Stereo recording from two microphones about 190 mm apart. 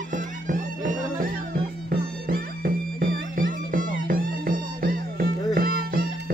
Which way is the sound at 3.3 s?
45° right (ahead or behind).